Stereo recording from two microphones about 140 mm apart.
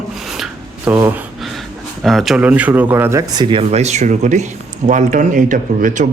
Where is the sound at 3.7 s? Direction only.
55° right (ahead or behind).